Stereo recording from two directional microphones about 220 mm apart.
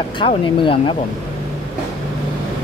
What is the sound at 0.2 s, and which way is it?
Speech, 25° left (ahead or behind).